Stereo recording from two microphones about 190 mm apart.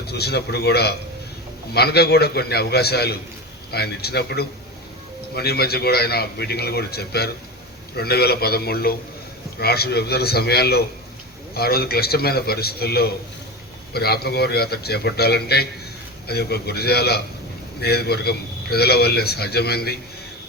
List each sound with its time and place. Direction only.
0.0 s a man's voice: 60° left (ahead or behind)